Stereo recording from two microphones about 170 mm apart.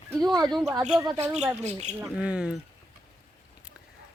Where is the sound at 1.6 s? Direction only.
40° right (ahead or behind).